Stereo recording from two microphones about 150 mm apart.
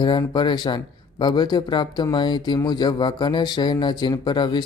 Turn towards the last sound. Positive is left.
turn(degrees=30)  # may be behind; listen again after turning